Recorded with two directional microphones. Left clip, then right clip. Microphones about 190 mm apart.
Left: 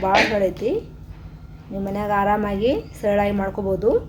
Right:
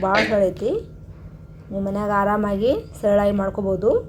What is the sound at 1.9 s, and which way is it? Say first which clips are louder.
A woman's voice: even; 10° right (ahead or behind).